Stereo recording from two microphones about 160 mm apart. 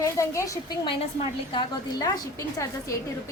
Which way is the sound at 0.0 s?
20° left (ahead or behind).